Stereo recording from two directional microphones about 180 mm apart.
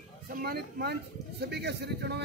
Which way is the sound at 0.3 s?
60° right (ahead or behind).